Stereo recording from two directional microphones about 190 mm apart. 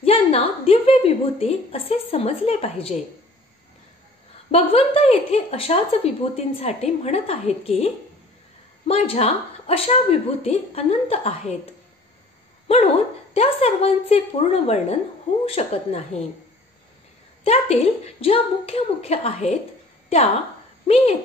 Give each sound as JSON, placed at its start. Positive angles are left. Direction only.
{"t": 0.0, "sound": "a woman's voice", "side_deg": 30}
{"t": 4.5, "sound": "a woman's voice", "side_deg": 30}
{"t": 12.6, "sound": "a woman's voice", "side_deg": 30}
{"t": 17.4, "sound": "a woman's voice", "side_deg": 35}
{"t": 20.8, "sound": "a woman's voice", "side_deg": 30}